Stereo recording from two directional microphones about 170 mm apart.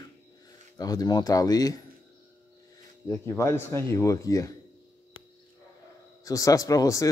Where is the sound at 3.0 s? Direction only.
15° left (ahead or behind).